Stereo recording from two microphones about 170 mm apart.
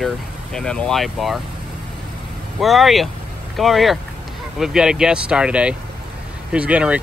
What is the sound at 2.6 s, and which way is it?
Speech, centre (ahead or behind).